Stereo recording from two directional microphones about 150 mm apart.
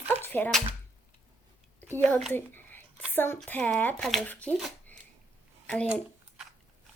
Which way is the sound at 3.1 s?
15° left (ahead or behind).